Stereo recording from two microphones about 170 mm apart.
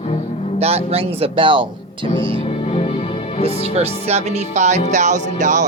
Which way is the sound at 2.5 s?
35° left (ahead or behind).